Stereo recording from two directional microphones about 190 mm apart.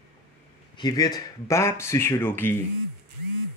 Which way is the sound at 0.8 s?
20° left (ahead or behind).